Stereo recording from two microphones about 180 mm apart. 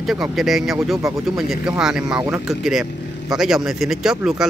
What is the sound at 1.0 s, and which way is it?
Speech, 15° right (ahead or behind).